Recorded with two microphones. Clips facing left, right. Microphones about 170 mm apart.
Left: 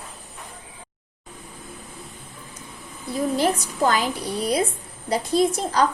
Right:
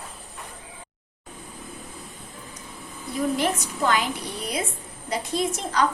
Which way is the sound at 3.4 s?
35° left (ahead or behind).